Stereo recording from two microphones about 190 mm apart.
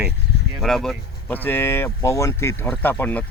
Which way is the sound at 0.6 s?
Centre (ahead or behind).